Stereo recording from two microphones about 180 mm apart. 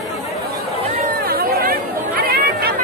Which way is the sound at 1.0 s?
55° right (ahead or behind).